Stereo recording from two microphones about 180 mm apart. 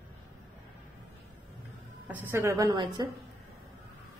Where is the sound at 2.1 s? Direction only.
15° right (ahead or behind).